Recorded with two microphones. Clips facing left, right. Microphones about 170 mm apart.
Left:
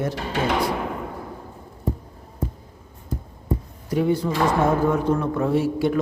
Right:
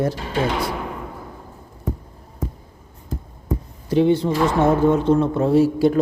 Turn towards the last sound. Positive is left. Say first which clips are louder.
# right 5 dB
turn(degrees=-35)  # may be behind; listen again after turning